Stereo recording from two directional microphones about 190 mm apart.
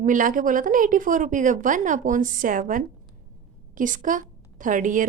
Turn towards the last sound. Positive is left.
turn(degrees=-45)  # may be behind; listen again after turning